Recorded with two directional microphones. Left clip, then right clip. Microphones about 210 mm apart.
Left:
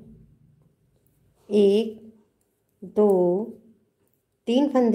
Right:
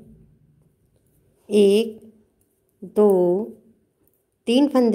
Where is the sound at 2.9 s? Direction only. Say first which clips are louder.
Right 3 dB; 15° right (ahead or behind).